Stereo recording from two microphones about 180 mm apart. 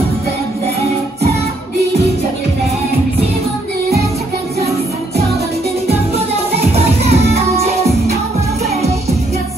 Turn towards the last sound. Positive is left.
turn(degrees=-35)  # may be behind; listen again after turning